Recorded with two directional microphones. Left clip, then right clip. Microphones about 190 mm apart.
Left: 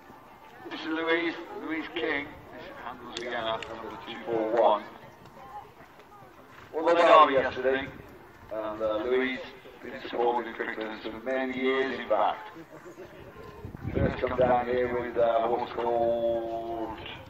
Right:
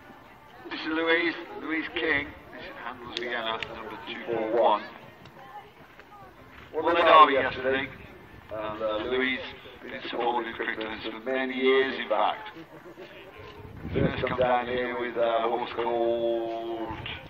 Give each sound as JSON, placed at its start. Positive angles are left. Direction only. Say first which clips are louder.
{"t": 0.7, "sound": "a man's voice", "louder": "right 3 dB", "side_deg": 50}
{"t": 6.8, "sound": "a man's voice", "louder": "right 1 dB", "side_deg": 35}
{"t": 14.1, "sound": "a man's voice", "louder": "left 1 dB", "side_deg": 30}